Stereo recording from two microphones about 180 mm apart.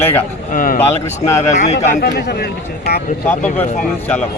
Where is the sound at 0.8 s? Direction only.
15° left (ahead or behind).